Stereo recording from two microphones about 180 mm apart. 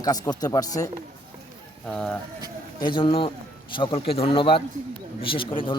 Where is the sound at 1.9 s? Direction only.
5° left (ahead or behind).